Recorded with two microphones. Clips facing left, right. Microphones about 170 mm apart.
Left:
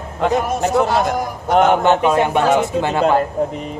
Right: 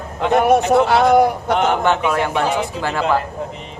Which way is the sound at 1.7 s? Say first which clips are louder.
Left 3 dB; 20° left (ahead or behind).